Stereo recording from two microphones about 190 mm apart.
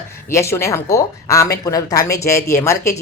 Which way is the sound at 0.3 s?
15° left (ahead or behind).